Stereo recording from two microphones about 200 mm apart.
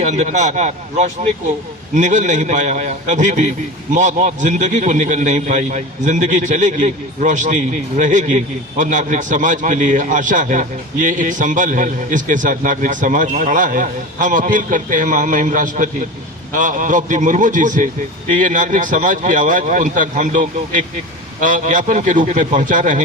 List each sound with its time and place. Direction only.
0.0 s a man's voice: 35° right (ahead or behind)